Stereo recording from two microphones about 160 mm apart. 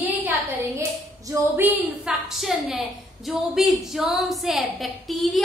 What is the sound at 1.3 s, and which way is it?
Speech, 15° right (ahead or behind).